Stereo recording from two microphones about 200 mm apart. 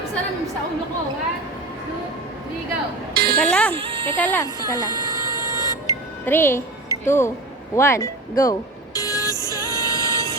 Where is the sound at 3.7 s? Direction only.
25° right (ahead or behind).